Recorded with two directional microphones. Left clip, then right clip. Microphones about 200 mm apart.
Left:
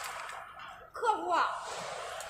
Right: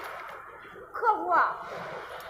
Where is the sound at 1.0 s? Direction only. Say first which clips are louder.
Right 5 dB; 30° right (ahead or behind).